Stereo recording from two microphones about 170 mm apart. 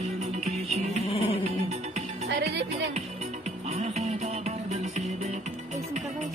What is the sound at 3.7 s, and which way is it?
Music, 40° right (ahead or behind).